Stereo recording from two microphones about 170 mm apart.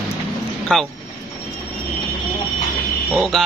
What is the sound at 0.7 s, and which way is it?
Music, 5° left (ahead or behind).